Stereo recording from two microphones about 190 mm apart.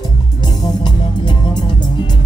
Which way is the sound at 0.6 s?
25° left (ahead or behind).